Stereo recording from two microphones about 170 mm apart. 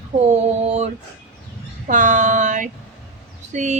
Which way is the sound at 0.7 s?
40° right (ahead or behind).